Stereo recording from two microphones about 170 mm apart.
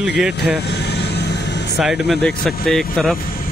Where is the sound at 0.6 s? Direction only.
75° left (ahead or behind).